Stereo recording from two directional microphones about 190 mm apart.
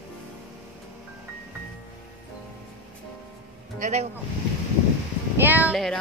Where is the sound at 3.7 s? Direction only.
40° right (ahead or behind).